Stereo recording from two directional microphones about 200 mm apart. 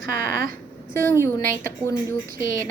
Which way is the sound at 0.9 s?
15° left (ahead or behind).